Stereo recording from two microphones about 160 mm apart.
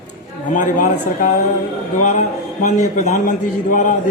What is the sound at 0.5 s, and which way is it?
Speech, 55° left (ahead or behind).